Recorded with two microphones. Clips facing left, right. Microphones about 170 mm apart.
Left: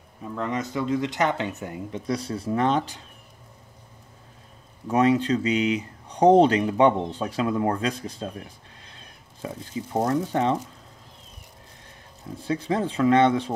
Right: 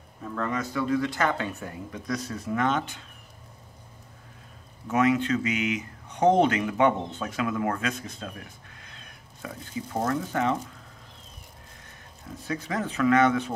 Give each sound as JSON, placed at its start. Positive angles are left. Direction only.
{"t": 0.2, "sound": "speech", "side_deg": 20}
{"t": 4.8, "sound": "speech", "side_deg": 35}
{"t": 12.4, "sound": "speech", "side_deg": 30}